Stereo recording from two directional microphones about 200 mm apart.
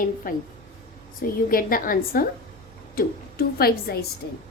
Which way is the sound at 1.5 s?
45° left (ahead or behind).